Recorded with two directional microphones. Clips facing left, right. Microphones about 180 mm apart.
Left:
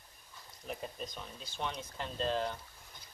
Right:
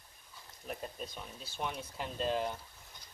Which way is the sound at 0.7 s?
Centre (ahead or behind).